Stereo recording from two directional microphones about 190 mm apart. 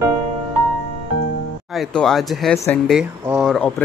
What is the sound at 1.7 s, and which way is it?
Speech, centre (ahead or behind).